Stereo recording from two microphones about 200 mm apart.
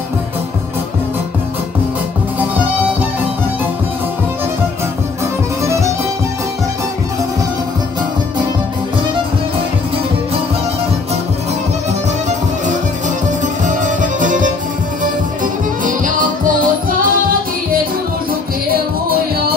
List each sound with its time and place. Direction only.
5.2 s music: 15° right (ahead or behind)
13.4 s music: 40° right (ahead or behind)
18.7 s music: 50° right (ahead or behind)